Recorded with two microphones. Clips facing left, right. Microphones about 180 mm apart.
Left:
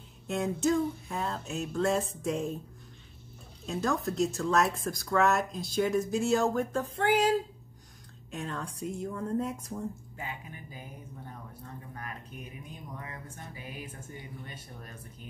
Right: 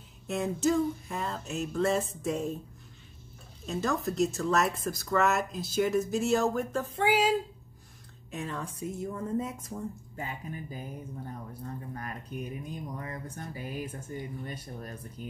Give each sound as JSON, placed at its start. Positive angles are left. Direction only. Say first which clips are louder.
{"t": 0.3, "sound": "speech", "louder": "even", "side_deg": 0}
{"t": 3.6, "sound": "speech", "louder": "even", "side_deg": 0}
{"t": 8.3, "sound": "speech", "louder": "right 1 dB", "side_deg": -5}
{"t": 10.1, "sound": "speech", "louder": "right 4 dB", "side_deg": -40}
{"t": 11.9, "sound": "speech", "louder": "right 4 dB", "side_deg": -40}